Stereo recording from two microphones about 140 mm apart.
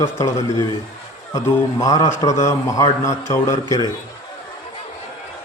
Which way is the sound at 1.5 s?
25° left (ahead or behind).